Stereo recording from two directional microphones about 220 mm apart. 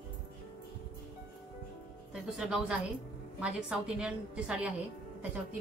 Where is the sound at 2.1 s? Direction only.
5° right (ahead or behind).